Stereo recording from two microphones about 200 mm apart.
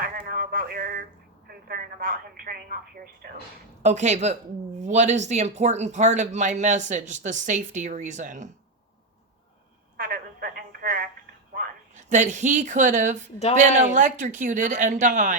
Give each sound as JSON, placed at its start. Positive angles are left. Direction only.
{"t": 0.0, "sound": "a sound", "side_deg": -45}
{"t": 1.5, "sound": "speech", "side_deg": -50}
{"t": 3.8, "sound": "speech", "side_deg": -35}
{"t": 10.0, "sound": "telephone", "side_deg": -45}
{"t": 12.0, "sound": "speech", "side_deg": -35}